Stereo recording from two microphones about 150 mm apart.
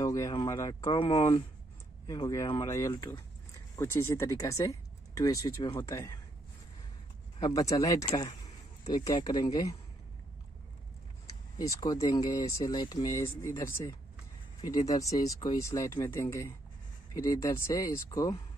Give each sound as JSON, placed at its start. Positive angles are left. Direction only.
{"t": 0.0, "sound": "speech", "side_deg": 20}
{"t": 7.3, "sound": "speech", "side_deg": 25}
{"t": 11.5, "sound": "speech", "side_deg": 25}